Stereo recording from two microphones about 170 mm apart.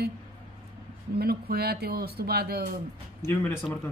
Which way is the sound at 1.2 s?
65° right (ahead or behind).